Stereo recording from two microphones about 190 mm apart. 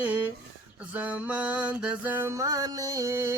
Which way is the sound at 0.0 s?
10° right (ahead or behind).